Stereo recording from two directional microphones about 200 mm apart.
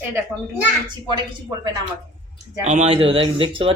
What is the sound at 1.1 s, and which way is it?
Speech, 20° right (ahead or behind).